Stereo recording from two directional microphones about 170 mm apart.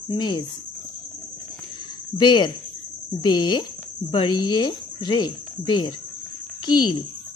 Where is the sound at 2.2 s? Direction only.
25° left (ahead or behind).